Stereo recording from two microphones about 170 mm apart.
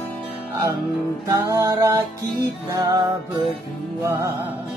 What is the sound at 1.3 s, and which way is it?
Music, 20° right (ahead or behind).